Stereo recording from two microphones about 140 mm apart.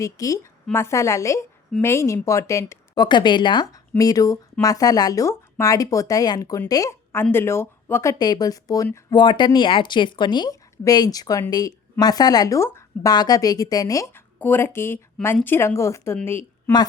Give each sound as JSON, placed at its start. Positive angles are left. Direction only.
{"t": 0.0, "sound": "a woman's voice", "side_deg": 25}
{"t": 8.2, "sound": "speech", "side_deg": 30}
{"t": 14.3, "sound": "speech", "side_deg": 15}